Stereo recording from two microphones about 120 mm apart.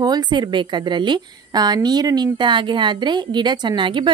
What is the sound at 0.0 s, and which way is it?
A woman's voice, 35° right (ahead or behind).